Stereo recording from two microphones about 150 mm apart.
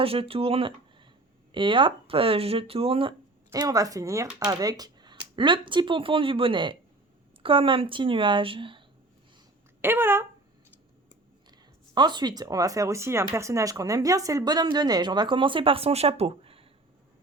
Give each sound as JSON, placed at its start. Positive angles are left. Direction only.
{"t": 0.0, "sound": "speech", "side_deg": -40}
{"t": 3.5, "sound": "speech", "side_deg": -25}
{"t": 9.8, "sound": "speech", "side_deg": -15}
{"t": 11.9, "sound": "speech", "side_deg": -30}